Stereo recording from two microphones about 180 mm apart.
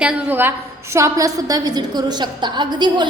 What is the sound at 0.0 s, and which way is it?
A woman's voice, 10° right (ahead or behind).